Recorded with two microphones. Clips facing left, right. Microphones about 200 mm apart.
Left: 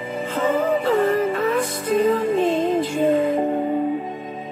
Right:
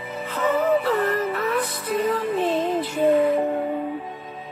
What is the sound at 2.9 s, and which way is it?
Music, 25° left (ahead or behind).